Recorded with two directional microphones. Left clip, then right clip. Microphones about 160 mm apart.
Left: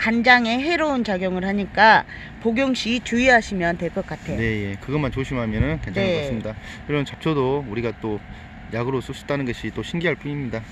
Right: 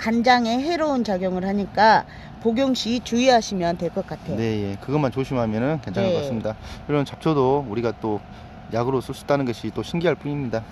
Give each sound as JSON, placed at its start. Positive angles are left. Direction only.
{"t": 0.0, "sound": "a woman's voice", "side_deg": 40}
{"t": 4.4, "sound": "speech", "side_deg": 0}